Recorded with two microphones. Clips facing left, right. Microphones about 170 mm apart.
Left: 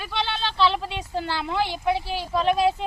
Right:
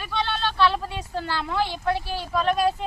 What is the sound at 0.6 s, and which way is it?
A woman's voice, 20° left (ahead or behind).